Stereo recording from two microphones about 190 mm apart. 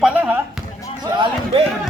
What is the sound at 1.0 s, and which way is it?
Speech, 25° right (ahead or behind).